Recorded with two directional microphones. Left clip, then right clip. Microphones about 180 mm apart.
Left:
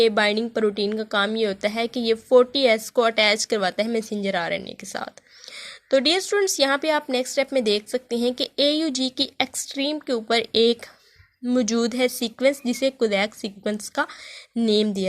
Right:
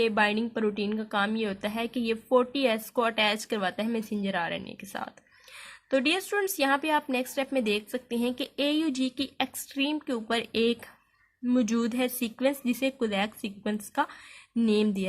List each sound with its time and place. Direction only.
0.0 s a woman's voice: 35° left (ahead or behind)